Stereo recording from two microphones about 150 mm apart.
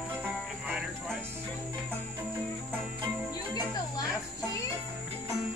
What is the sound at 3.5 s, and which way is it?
Music, 25° left (ahead or behind).